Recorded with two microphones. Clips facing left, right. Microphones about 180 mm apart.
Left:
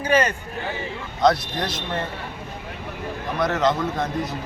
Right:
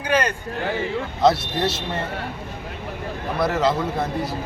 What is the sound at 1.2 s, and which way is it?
Speech, 25° right (ahead or behind).